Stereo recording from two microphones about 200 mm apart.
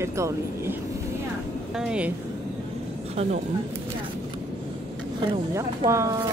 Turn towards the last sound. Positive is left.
turn(degrees=-15)  # may be behind; listen again after turning